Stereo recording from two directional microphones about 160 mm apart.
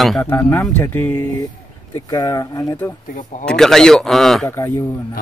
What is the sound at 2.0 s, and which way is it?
Speech, 25° left (ahead or behind).